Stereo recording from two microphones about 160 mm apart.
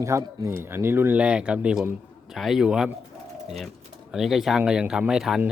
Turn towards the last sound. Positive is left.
turn(degrees=-5)  # may be behind; listen again after turning